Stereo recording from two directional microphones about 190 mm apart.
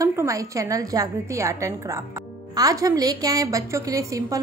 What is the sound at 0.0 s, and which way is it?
A woman's voice, 15° right (ahead or behind).